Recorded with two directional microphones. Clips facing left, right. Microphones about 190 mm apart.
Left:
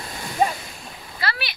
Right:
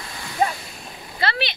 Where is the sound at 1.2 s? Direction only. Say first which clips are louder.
Right 4 dB; 25° right (ahead or behind).